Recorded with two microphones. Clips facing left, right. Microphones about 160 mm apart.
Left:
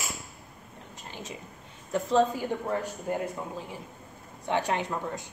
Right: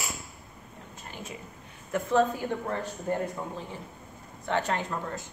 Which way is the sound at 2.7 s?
10° left (ahead or behind).